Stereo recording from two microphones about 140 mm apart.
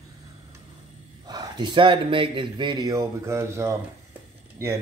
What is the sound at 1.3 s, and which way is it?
Speech, 30° right (ahead or behind).